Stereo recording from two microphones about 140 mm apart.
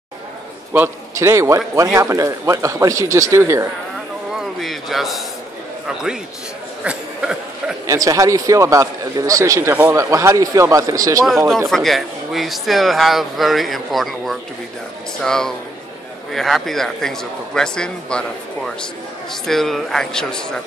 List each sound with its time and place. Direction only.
0.7 s a man's voice: 20° right (ahead or behind)
4.4 s speech: centre (ahead or behind)
6.8 s a sound: 5° right (ahead or behind)
7.8 s a man's voice: 25° right (ahead or behind)
11.5 s speech: centre (ahead or behind)
19.4 s speech: centre (ahead or behind)